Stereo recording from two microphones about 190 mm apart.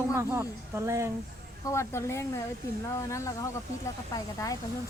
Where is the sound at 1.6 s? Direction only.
15° left (ahead or behind).